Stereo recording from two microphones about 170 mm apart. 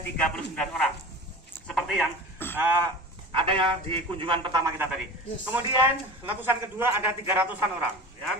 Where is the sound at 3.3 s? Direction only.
30° right (ahead or behind).